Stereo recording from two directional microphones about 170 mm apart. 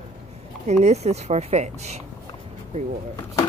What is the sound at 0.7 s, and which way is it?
Speech, 40° right (ahead or behind).